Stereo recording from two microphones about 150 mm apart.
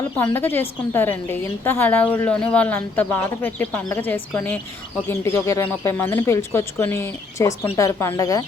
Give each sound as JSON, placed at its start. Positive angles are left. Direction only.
{"t": 0.3, "sound": "a woman's voice", "side_deg": 15}